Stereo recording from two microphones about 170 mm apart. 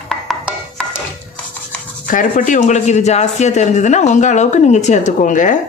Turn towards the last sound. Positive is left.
turn(degrees=50)  # may be behind; listen again after turning